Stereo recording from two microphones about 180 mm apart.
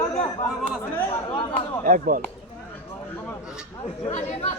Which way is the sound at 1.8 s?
45° right (ahead or behind).